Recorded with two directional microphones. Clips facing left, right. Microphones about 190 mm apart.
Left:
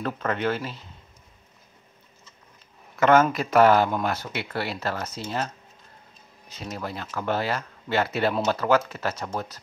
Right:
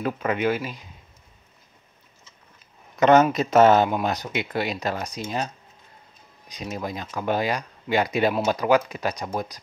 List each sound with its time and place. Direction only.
0.0 s speech: 10° right (ahead or behind)
3.0 s speech: 20° right (ahead or behind)